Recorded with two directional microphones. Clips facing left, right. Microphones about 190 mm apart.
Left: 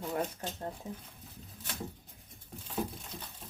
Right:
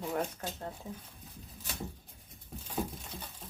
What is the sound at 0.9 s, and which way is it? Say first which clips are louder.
Speech: left 1 dB; 20° left (ahead or behind).